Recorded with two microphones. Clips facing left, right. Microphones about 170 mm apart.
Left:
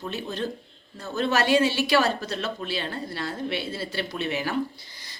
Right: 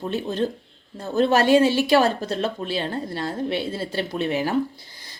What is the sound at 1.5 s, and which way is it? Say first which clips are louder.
Speech: right 5 dB; 45° right (ahead or behind).